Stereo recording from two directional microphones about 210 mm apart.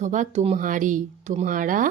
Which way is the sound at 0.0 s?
35° right (ahead or behind).